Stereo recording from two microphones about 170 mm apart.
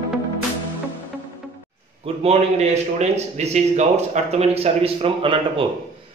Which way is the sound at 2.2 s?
40° right (ahead or behind).